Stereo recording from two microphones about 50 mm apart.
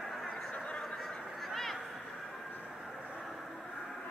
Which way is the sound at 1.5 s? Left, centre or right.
Centre.